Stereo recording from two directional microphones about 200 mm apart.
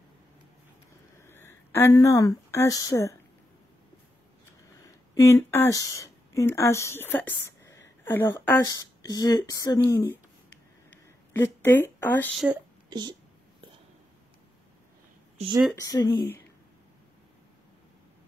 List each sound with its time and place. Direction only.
1.2 s speech: 10° left (ahead or behind)
4.8 s speech: 15° left (ahead or behind)
11.4 s speech: 10° left (ahead or behind)
15.3 s speech: 25° right (ahead or behind)
15.7 s speech: 15° left (ahead or behind)